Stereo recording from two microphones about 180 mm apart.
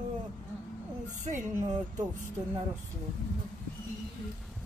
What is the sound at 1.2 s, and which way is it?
Speech, 45° right (ahead or behind).